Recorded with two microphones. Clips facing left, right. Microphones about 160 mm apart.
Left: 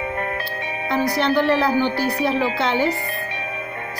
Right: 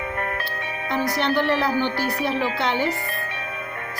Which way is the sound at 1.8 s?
15° left (ahead or behind).